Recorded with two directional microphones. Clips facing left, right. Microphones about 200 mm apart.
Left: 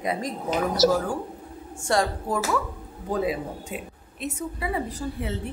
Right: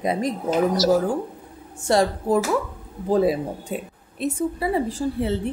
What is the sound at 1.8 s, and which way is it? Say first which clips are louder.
Speech: right 5 dB; 25° right (ahead or behind).